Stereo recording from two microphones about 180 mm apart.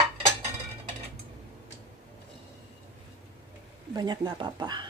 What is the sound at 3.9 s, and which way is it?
Speech, 25° right (ahead or behind).